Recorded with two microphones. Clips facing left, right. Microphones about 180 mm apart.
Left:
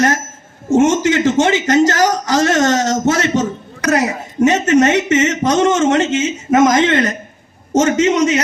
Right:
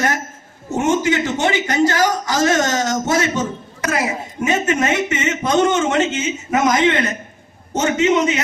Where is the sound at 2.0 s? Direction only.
40° left (ahead or behind).